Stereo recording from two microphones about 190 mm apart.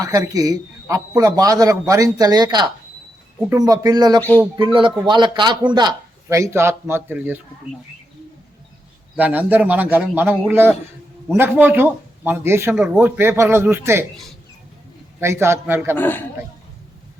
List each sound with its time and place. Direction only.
0.0 s a man's voice: 20° right (ahead or behind)
4.2 s speech: 10° left (ahead or behind)
4.5 s a man's voice: 25° right (ahead or behind); by 7.4 s 10° right (ahead or behind)
9.1 s speech: 10° right (ahead or behind)
15.2 s speech: 15° right (ahead or behind)
16.0 s speech: 10° left (ahead or behind)